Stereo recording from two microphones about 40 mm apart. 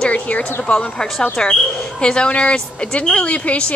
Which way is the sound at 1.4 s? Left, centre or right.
Left.